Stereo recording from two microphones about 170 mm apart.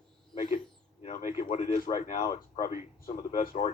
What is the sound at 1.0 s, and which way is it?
A man's voice, 45° left (ahead or behind).